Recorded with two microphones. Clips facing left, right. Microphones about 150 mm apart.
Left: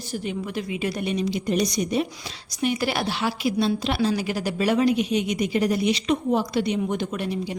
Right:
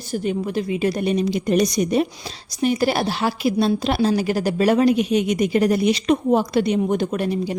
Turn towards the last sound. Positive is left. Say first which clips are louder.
# right 5 dB
turn(degrees=-45)  # may be behind; listen again after turning